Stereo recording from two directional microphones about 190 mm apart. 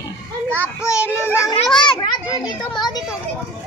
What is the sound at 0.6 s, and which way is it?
Speech, 15° left (ahead or behind).